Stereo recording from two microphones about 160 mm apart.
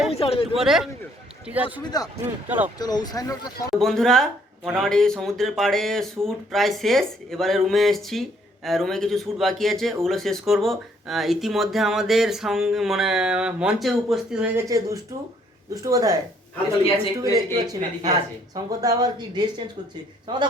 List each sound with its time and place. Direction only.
0.1 s a sound: 35° left (ahead or behind)
0.5 s speech: centre (ahead or behind)
1.8 s speech: 25° left (ahead or behind)
2.2 s speech: 10° right (ahead or behind)
2.7 s speech: 25° left (ahead or behind)
3.8 s speech: centre (ahead or behind)
14.7 s speech: 20° right (ahead or behind)
17.3 s speech: 25° right (ahead or behind)